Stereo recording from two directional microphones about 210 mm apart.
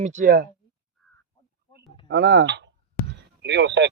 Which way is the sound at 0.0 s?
35° right (ahead or behind).